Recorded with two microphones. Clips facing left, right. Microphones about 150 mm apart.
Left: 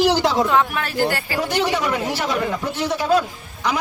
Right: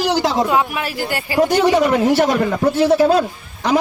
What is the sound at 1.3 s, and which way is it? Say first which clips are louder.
A man's voice: right 10 dB; 50° right (ahead or behind).